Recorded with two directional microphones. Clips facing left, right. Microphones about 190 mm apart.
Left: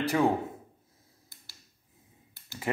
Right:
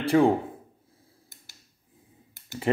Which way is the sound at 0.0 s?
30° right (ahead or behind).